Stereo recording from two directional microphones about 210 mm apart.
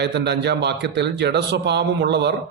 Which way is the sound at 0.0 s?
55° right (ahead or behind).